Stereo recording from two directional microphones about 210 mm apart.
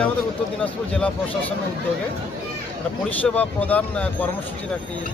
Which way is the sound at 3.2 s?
5° left (ahead or behind).